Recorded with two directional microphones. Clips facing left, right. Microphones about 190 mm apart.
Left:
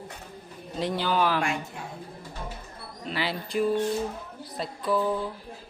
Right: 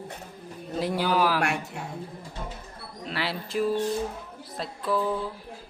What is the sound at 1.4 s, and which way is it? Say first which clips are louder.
Speech: right 1 dB; 70° right (ahead or behind).